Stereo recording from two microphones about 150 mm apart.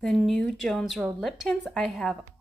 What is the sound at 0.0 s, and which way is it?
Speech, centre (ahead or behind).